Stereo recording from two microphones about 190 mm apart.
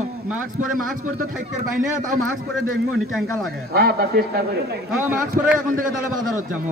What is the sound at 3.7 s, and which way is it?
Speech, 55° right (ahead or behind).